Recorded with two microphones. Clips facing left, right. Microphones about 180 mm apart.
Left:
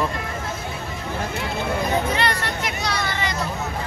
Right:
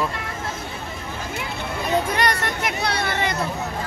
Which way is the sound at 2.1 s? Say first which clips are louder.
Right 1 dB; 55° right (ahead or behind).